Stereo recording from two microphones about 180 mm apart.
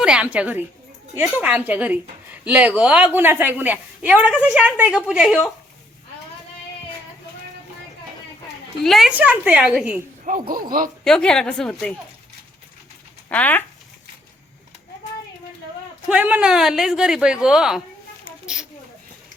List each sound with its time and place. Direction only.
0.0 s a woman's voice: 5° right (ahead or behind)
8.8 s a woman's voice: centre (ahead or behind)
10.5 s speech: 50° right (ahead or behind)
11.0 s speech: 5° left (ahead or behind)
13.2 s speech: 10° left (ahead or behind)
16.0 s speech: 5° right (ahead or behind)